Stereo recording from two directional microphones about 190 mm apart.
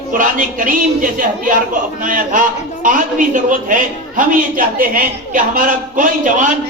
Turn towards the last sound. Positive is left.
turn(degrees=-45)  # may be behind; listen again after turning